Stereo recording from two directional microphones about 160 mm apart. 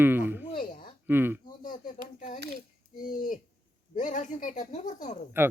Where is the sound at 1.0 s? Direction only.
15° right (ahead or behind).